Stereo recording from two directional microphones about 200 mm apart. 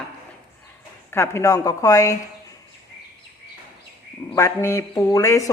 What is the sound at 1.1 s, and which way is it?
A woman's voice, 15° left (ahead or behind).